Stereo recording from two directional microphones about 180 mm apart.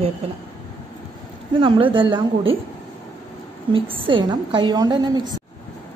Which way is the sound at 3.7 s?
30° right (ahead or behind).